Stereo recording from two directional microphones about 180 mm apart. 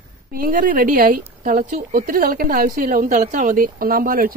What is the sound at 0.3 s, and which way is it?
Speech, 55° right (ahead or behind).